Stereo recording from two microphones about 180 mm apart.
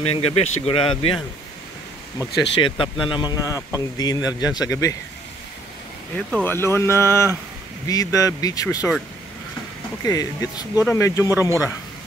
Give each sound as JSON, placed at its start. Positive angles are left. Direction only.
{"t": 0.0, "sound": "speech", "side_deg": 35}
{"t": 2.6, "sound": "speech", "side_deg": 30}
{"t": 6.1, "sound": "speech", "side_deg": 10}
{"t": 10.0, "sound": "speech", "side_deg": 20}